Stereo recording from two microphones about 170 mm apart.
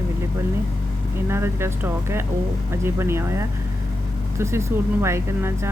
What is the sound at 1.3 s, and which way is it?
Speech, 15° right (ahead or behind).